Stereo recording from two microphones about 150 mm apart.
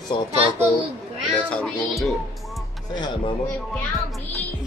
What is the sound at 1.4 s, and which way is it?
Speech, 5° left (ahead or behind).